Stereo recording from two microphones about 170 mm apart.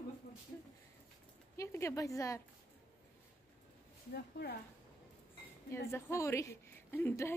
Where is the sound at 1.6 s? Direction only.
15° left (ahead or behind).